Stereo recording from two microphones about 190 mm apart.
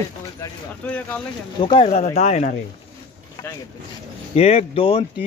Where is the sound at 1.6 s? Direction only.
30° left (ahead or behind).